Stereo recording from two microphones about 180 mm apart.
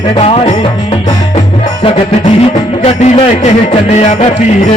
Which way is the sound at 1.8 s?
35° left (ahead or behind).